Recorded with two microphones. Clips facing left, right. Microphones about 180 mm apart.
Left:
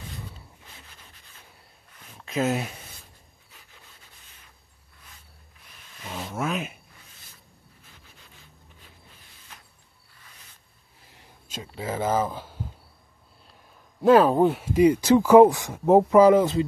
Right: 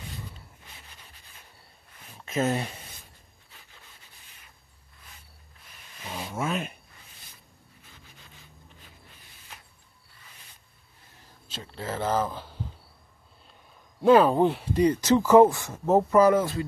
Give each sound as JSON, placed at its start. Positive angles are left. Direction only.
{"t": 2.1, "sound": "speech", "side_deg": 0}
{"t": 6.0, "sound": "a sound", "side_deg": -5}
{"t": 11.5, "sound": "speech", "side_deg": 10}
{"t": 14.0, "sound": "speech", "side_deg": 0}